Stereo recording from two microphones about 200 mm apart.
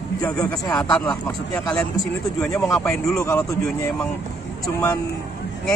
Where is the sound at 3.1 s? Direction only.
15° left (ahead or behind).